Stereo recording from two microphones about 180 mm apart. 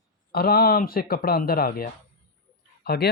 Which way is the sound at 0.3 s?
60° left (ahead or behind).